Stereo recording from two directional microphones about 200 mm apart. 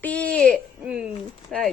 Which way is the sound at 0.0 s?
5° left (ahead or behind).